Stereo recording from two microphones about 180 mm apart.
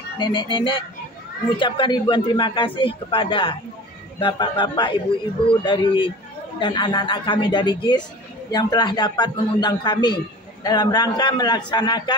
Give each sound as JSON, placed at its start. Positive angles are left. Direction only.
{"t": 0.2, "sound": "speech", "side_deg": 25}